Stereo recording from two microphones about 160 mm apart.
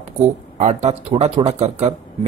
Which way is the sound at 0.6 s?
45° right (ahead or behind).